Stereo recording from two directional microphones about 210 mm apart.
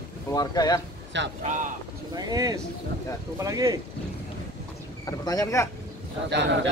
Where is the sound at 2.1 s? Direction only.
15° right (ahead or behind).